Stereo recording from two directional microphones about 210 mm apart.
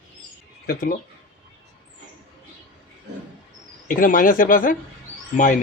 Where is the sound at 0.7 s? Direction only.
45° left (ahead or behind).